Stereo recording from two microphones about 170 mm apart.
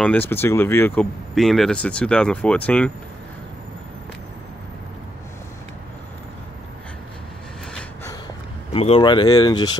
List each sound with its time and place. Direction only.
0.0 s speech: 10° left (ahead or behind)
8.7 s speech: 35° left (ahead or behind)